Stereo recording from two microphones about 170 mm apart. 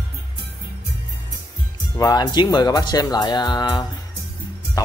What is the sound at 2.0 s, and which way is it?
Speech, 20° left (ahead or behind).